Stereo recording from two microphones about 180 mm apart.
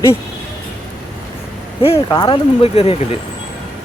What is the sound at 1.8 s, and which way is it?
Speech, 30° left (ahead or behind).